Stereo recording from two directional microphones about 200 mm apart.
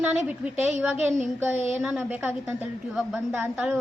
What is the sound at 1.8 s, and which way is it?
A woman's voice, 5° right (ahead or behind).